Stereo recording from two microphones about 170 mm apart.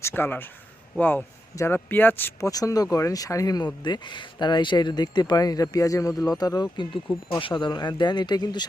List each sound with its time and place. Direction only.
0.0 s speech: 10° left (ahead or behind)